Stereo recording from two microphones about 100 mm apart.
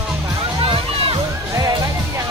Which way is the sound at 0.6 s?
70° right (ahead or behind).